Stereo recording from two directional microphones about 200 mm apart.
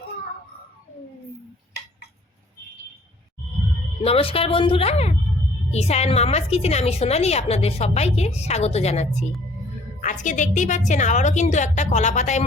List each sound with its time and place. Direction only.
4.0 s a woman's voice: 30° left (ahead or behind)